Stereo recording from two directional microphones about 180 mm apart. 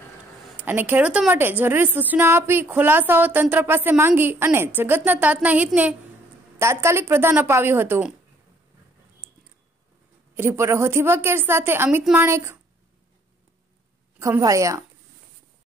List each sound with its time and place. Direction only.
0.6 s a woman's voice: 10° right (ahead or behind)
10.3 s a woman's voice: 15° right (ahead or behind)
14.2 s a woman's voice: 15° right (ahead or behind)